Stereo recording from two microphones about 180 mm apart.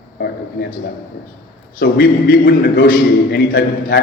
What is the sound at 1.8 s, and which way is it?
A man's voice, 55° left (ahead or behind).